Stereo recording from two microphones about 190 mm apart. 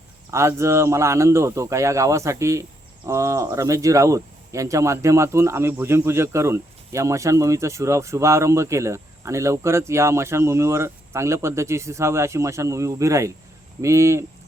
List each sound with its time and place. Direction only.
0.3 s speech: 15° right (ahead or behind)